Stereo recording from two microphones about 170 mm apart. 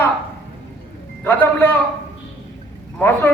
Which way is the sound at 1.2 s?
10° left (ahead or behind).